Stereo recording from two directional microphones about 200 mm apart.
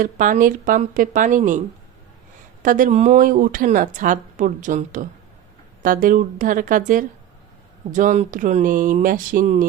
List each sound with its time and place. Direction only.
0.0 s a woman's voice: 40° right (ahead or behind)
2.6 s a woman's voice: 40° right (ahead or behind)